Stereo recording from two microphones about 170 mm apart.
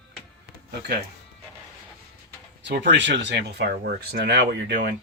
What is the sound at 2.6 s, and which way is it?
Speech, 90° right.